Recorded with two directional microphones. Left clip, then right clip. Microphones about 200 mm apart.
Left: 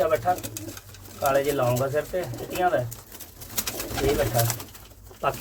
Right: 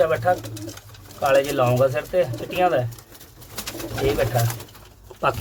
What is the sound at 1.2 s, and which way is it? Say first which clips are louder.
Speech: right 4 dB; 40° right (ahead or behind).